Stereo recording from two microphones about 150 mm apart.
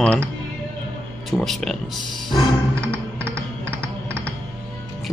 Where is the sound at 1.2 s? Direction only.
Centre (ahead or behind).